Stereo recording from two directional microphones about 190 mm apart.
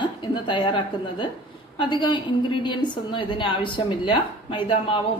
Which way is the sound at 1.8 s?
25° left (ahead or behind).